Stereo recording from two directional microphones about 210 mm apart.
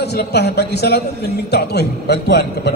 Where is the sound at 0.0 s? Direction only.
50° left (ahead or behind).